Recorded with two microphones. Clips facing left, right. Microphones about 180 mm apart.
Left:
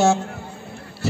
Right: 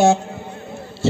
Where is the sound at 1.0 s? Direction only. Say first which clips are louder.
Right 6 dB; 25° right (ahead or behind).